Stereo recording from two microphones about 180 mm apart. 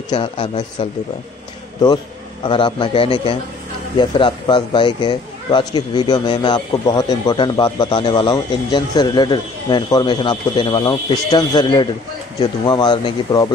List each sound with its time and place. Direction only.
0.1 s speech: 25° left (ahead or behind)
2.4 s speech: 25° left (ahead or behind)